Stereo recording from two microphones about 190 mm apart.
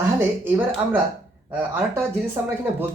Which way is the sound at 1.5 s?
10° right (ahead or behind).